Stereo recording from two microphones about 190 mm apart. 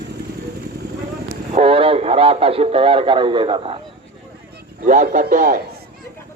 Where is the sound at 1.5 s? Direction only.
30° right (ahead or behind).